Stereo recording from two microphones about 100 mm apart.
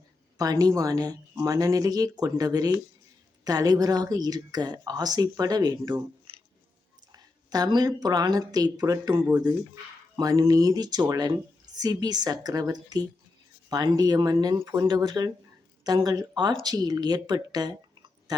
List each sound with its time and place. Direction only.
0.3 s speech: 35° right (ahead or behind)
7.1 s speech: 40° right (ahead or behind)
10.2 s speech: 35° right (ahead or behind)